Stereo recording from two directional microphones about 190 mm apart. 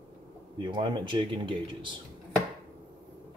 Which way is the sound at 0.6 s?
25° right (ahead or behind).